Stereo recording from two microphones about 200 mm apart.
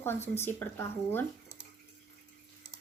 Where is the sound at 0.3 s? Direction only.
10° left (ahead or behind).